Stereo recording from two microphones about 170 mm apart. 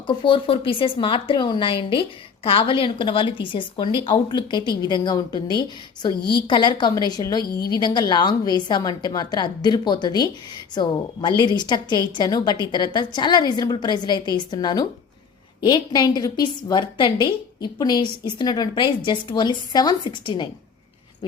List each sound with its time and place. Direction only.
0.1 s a woman's voice: 30° left (ahead or behind)
6.1 s a woman's voice: 70° left (ahead or behind)
6.5 s a woman's voice: 25° left (ahead or behind)